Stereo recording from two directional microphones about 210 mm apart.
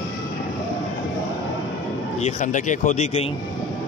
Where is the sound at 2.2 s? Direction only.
35° left (ahead or behind).